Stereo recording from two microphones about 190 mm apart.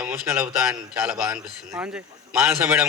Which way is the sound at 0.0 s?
5° right (ahead or behind).